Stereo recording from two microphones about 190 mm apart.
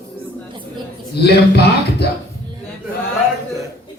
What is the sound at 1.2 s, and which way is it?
Speech, 60° left (ahead or behind).